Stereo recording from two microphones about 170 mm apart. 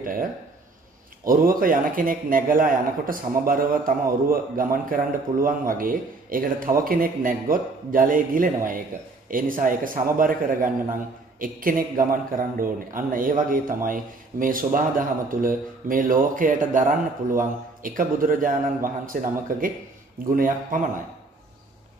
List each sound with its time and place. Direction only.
0.0 s a man's voice: 55° right (ahead or behind)